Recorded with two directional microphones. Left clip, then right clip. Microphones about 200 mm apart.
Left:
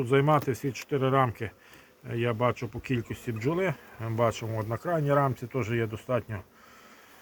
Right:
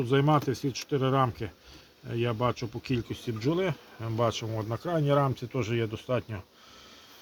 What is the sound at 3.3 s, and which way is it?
Bee, 20° left (ahead or behind).